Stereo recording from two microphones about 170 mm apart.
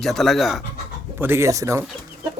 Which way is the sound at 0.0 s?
Centre (ahead or behind).